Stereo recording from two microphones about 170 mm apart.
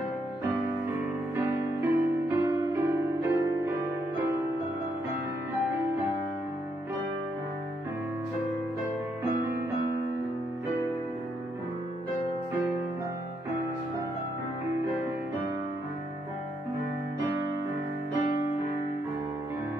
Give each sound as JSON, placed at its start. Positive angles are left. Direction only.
{"t": 1.3, "sound": "music", "side_deg": -15}